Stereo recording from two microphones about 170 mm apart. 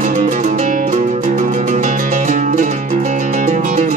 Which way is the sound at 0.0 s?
45° right (ahead or behind).